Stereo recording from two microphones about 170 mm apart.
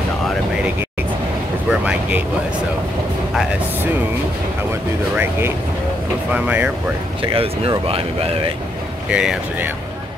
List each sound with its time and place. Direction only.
1.7 s vehicle: 10° right (ahead or behind)
6.3 s speech: 10° right (ahead or behind)
7.2 s speech: 30° right (ahead or behind)
9.1 s speech: 5° right (ahead or behind)